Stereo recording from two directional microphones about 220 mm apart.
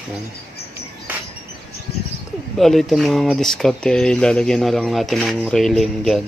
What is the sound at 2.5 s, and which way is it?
Speech, centre (ahead or behind).